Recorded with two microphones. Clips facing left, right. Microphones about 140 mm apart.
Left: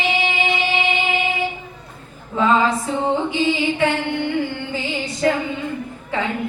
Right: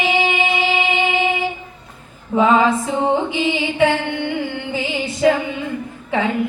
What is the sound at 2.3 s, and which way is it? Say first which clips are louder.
Music: right 3 dB; 20° right (ahead or behind).